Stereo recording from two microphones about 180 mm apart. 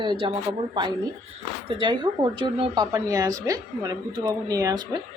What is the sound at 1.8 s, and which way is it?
Speech, 25° right (ahead or behind).